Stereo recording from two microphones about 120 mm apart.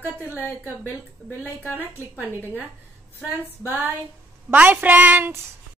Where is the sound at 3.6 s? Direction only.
15° right (ahead or behind).